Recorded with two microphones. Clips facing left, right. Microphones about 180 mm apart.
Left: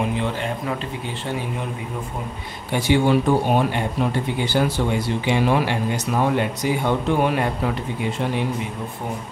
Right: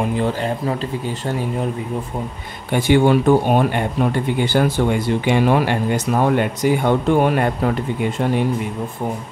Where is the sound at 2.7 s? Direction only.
55° right (ahead or behind).